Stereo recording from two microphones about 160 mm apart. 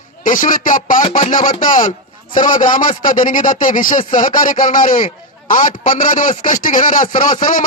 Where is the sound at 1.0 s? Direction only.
35° left (ahead or behind).